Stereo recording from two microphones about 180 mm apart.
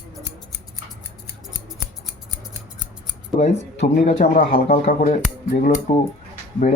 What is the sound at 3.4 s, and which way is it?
A man's voice, 50° left (ahead or behind).